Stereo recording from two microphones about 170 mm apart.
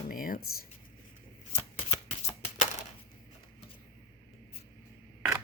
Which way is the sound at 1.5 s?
35° left (ahead or behind).